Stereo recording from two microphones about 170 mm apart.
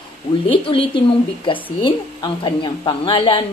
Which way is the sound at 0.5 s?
30° left (ahead or behind).